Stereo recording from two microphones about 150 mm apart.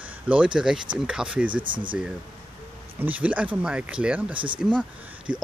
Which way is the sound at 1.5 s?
30° right (ahead or behind).